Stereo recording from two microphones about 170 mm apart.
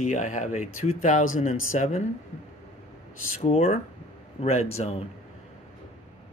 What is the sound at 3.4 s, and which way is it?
Speech, 40° left (ahead or behind).